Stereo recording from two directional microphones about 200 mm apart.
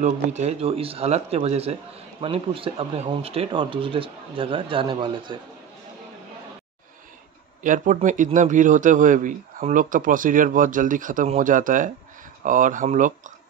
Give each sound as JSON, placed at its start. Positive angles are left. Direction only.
{"t": 0.0, "sound": "speech", "side_deg": -35}
{"t": 7.6, "sound": "speech", "side_deg": -40}